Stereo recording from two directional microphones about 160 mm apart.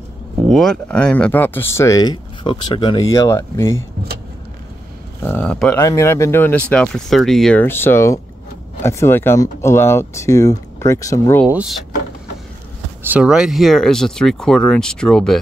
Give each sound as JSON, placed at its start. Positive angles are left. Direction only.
{"t": 0.5, "sound": "speech", "side_deg": 0}
{"t": 5.2, "sound": "speech", "side_deg": 10}
{"t": 5.9, "sound": "speech", "side_deg": 20}
{"t": 7.6, "sound": "speech", "side_deg": 15}
{"t": 11.4, "sound": "speech", "side_deg": -10}
{"t": 13.1, "sound": "speech", "side_deg": -5}